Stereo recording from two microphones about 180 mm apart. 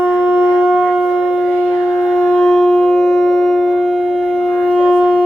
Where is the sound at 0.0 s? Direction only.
10° right (ahead or behind).